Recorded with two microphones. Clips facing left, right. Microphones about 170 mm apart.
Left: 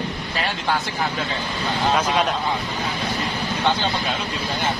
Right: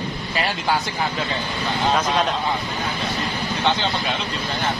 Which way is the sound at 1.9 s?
5° left (ahead or behind).